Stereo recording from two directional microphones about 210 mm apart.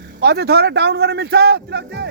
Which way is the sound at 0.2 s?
50° right (ahead or behind).